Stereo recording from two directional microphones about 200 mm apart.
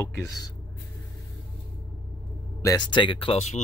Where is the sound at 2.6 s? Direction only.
20° left (ahead or behind).